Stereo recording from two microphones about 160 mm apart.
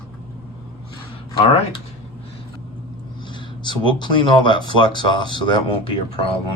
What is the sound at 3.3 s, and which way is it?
Speech, 30° left (ahead or behind).